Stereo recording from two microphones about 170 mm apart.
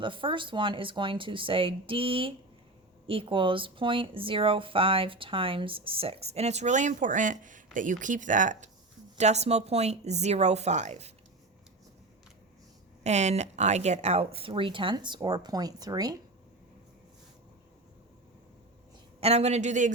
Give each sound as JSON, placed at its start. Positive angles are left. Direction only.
{"t": 0.0, "sound": "speech", "side_deg": -30}
{"t": 13.0, "sound": "speech", "side_deg": -40}
{"t": 19.2, "sound": "speech", "side_deg": -40}